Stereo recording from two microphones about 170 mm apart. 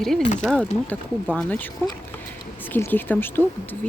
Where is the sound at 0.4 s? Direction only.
5° left (ahead or behind).